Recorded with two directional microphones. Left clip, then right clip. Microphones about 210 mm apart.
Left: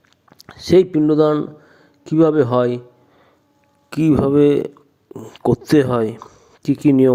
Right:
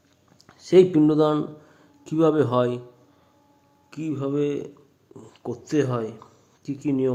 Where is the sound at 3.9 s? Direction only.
40° left (ahead or behind).